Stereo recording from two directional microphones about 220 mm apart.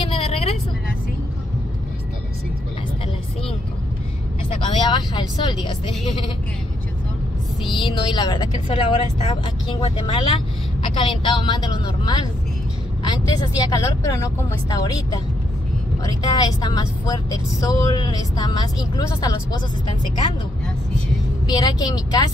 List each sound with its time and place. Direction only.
0.1 s vehicle: 25° left (ahead or behind)
4.6 s sheep: 20° left (ahead or behind)
7.7 s a woman's voice: 20° left (ahead or behind)
21.5 s a woman's voice: 20° left (ahead or behind)